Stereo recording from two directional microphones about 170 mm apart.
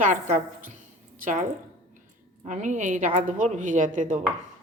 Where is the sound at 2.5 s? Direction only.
45° right (ahead or behind).